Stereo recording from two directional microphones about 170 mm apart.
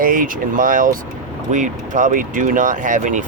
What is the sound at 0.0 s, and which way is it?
Speech, 55° right (ahead or behind).